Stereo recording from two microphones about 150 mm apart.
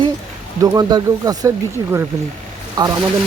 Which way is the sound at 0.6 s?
25° right (ahead or behind).